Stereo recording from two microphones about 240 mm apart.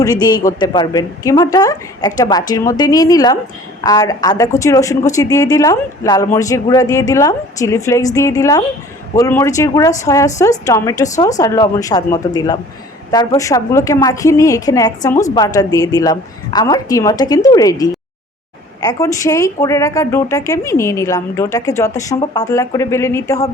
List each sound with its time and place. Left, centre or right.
0.0 s a woman's voice: centre